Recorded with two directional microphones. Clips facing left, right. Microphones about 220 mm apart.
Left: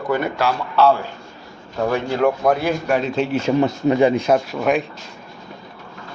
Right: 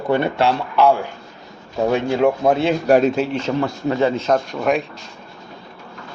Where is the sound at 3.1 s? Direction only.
Centre (ahead or behind).